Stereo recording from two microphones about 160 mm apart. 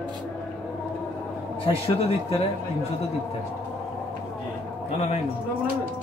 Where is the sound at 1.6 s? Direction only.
40° left (ahead or behind).